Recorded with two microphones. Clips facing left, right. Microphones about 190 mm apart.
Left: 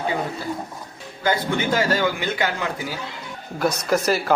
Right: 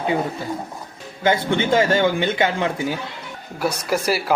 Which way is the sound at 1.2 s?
25° right (ahead or behind).